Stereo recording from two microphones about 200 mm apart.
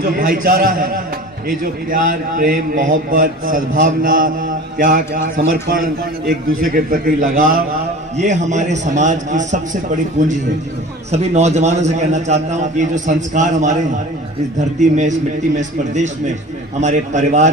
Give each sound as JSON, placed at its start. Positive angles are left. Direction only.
{"t": 0.0, "sound": "a man's voice", "side_deg": -45}
{"t": 11.1, "sound": "a man's voice", "side_deg": -35}